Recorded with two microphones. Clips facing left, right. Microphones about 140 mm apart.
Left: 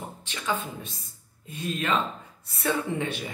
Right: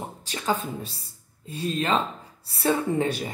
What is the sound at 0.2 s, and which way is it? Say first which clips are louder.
A woman's voice: right 3 dB; 35° right (ahead or behind).